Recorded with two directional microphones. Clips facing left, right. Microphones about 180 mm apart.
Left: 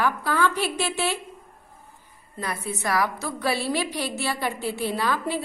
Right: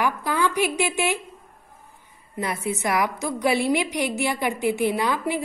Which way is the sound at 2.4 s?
20° right (ahead or behind).